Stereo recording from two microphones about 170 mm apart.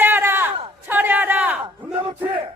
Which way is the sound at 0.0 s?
10° right (ahead or behind).